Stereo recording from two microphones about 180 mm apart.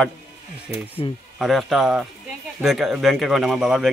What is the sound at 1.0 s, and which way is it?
Speech, 30° left (ahead or behind).